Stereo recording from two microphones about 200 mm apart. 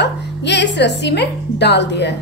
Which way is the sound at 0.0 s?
60° left (ahead or behind).